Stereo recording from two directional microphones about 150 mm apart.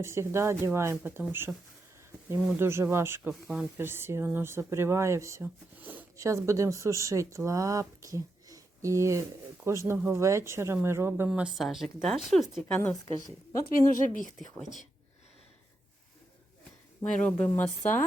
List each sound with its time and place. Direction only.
0.0 s speech: 15° right (ahead or behind)
11.3 s speech: 5° right (ahead or behind)
13.7 s speech: 65° left (ahead or behind)
17.0 s speech: 5° left (ahead or behind)